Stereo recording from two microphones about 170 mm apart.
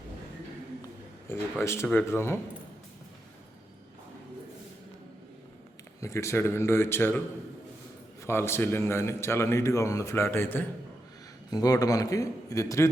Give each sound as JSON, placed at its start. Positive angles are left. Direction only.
{"t": 1.3, "sound": "a man's voice", "side_deg": 15}
{"t": 6.0, "sound": "a man's voice", "side_deg": 15}
{"t": 8.2, "sound": "a man's voice", "side_deg": 15}